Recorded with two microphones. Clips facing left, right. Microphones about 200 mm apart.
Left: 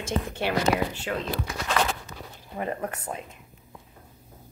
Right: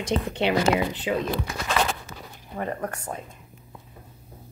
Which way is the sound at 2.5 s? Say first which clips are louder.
Right 1 dB; 10° left (ahead or behind).